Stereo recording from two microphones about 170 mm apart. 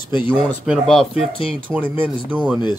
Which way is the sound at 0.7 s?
Centre (ahead or behind).